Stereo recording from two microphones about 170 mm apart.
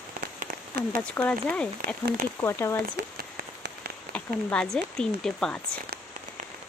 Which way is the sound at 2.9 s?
70° right (ahead or behind).